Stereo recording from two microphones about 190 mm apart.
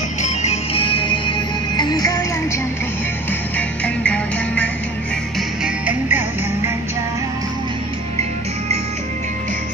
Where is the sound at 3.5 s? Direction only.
5° left (ahead or behind).